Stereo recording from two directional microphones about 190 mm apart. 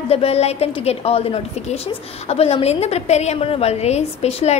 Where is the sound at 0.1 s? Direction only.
35° left (ahead or behind).